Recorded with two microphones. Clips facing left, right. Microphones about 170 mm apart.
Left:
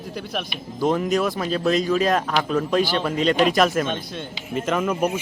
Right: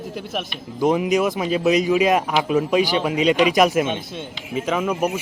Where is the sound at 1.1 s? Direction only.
20° right (ahead or behind).